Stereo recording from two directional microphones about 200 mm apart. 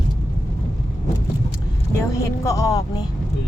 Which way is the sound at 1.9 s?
15° left (ahead or behind).